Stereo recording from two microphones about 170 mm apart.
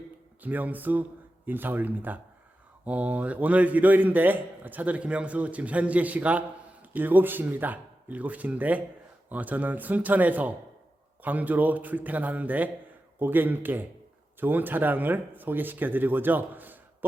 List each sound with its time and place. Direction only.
0.4 s a man's voice: 10° right (ahead or behind)